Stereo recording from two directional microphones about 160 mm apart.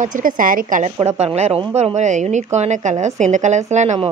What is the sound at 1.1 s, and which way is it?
Speech, 45° right (ahead or behind).